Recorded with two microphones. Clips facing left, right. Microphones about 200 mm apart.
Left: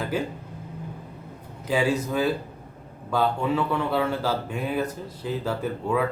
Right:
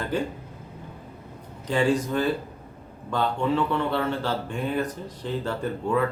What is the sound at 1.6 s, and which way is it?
Speech, 5° left (ahead or behind).